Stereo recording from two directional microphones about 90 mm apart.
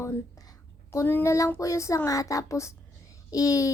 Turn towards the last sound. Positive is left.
turn(degrees=40)  # may be behind; listen again after turning